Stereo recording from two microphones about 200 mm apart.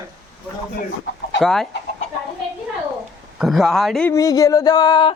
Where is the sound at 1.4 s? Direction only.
Centre (ahead or behind).